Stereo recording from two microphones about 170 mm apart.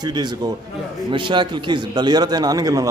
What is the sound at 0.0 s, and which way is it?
A man's voice, 25° right (ahead or behind).